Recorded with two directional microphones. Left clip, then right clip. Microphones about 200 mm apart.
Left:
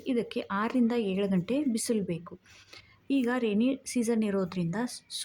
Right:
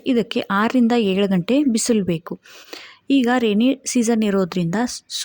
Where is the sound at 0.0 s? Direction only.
35° right (ahead or behind).